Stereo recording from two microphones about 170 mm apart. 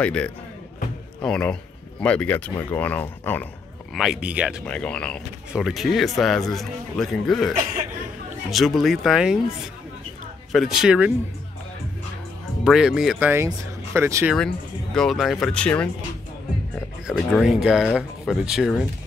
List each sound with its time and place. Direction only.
0.0 s speech: 5° left (ahead or behind)
3.9 s speech: centre (ahead or behind)
4.6 s speech: 5° left (ahead or behind)
10.5 s speech: centre (ahead or behind)
12.6 s speech: 5° right (ahead or behind)
13.3 s speech: 15° right (ahead or behind)
15.0 s speech: centre (ahead or behind)
17.1 s speech: centre (ahead or behind)